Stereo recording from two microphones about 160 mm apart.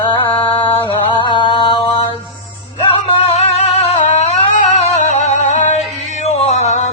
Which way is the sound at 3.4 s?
40° left (ahead or behind).